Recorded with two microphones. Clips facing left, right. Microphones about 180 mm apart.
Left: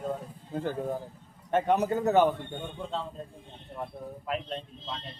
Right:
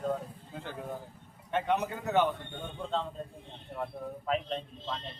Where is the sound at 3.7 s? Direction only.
5° left (ahead or behind).